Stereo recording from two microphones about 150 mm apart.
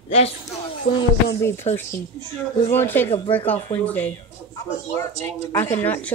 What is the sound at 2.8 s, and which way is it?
Speech, 15° left (ahead or behind).